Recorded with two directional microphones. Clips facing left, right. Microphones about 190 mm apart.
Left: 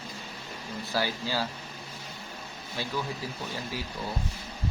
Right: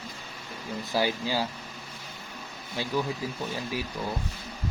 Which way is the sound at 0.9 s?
15° right (ahead or behind).